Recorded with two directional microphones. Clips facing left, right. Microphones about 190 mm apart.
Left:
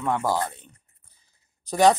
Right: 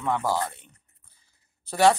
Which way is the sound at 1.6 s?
15° left (ahead or behind).